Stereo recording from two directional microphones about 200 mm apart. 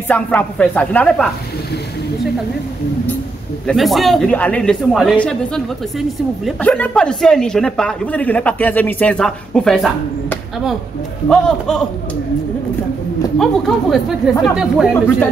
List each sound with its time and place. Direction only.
0.1 s speech: 5° left (ahead or behind)
3.6 s speech: centre (ahead or behind)
11.2 s speech: 5° left (ahead or behind)
13.4 s speech: centre (ahead or behind)